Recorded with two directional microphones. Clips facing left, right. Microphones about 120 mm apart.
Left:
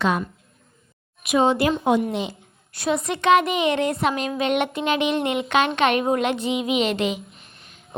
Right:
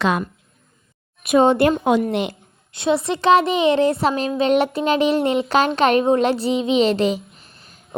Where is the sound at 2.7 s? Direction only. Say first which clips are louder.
Right 4 dB; 25° right (ahead or behind).